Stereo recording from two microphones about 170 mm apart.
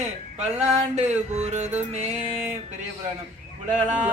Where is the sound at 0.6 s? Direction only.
40° right (ahead or behind).